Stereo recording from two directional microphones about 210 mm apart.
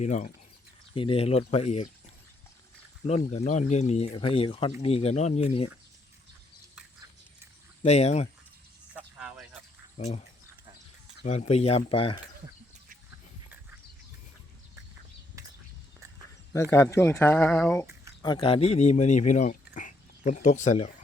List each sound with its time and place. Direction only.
0.0 s speech: 35° left (ahead or behind)
3.1 s speech: 30° left (ahead or behind)
7.8 s speech: 30° left (ahead or behind)
9.0 s a sound: 5° right (ahead or behind)
10.0 s speech: 30° left (ahead or behind)
16.0 s a sound: 15° right (ahead or behind)
16.5 s speech: 15° left (ahead or behind)
18.2 s speech: 20° left (ahead or behind)